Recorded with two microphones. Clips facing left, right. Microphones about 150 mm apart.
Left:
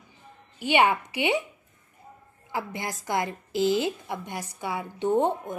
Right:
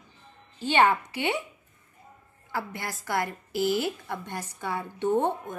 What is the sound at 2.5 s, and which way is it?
A woman's voice, 20° left (ahead or behind).